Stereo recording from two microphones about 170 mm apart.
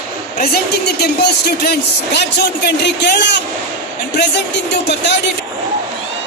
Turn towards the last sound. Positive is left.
turn(degrees=90)